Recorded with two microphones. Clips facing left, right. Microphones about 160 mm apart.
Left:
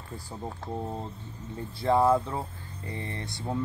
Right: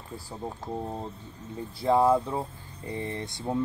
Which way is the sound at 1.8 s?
10° right (ahead or behind).